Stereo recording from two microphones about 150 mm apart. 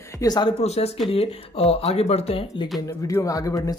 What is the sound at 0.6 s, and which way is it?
Speech, 45° left (ahead or behind).